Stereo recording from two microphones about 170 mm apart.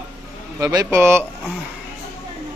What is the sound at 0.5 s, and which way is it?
Speech, 20° right (ahead or behind).